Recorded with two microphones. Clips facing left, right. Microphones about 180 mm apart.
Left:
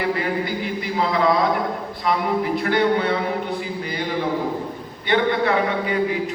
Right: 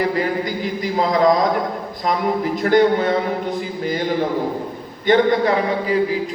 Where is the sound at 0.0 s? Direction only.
40° right (ahead or behind).